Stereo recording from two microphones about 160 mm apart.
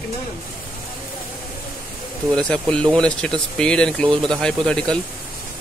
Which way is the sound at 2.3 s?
5° left (ahead or behind).